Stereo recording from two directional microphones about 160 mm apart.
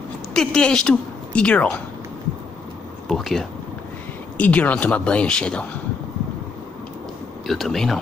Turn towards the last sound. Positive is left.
turn(degrees=0)  # may be behind; listen again after turning